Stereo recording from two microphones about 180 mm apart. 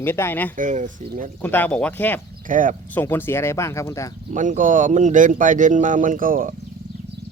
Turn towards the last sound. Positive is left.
turn(degrees=-50)  # may be behind; listen again after turning